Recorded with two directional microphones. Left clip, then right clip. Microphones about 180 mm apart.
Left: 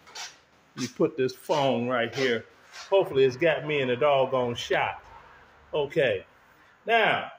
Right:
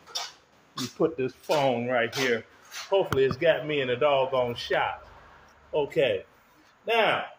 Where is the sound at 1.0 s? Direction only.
30° left (ahead or behind).